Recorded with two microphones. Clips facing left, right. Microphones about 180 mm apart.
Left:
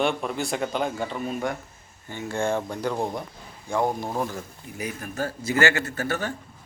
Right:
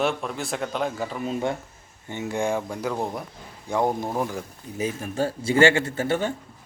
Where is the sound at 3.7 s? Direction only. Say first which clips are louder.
Right 1 dB; 20° right (ahead or behind).